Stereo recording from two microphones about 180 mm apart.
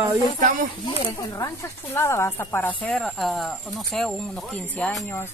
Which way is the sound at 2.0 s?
15° left (ahead or behind).